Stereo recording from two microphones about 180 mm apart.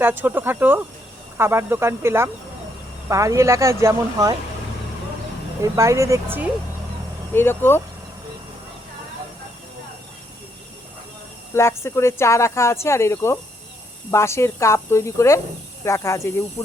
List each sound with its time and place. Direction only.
0.0 s speech: 10° right (ahead or behind)
5.7 s speech: 15° right (ahead or behind)
7.3 s speech: 10° left (ahead or behind)
11.5 s speech: 15° left (ahead or behind)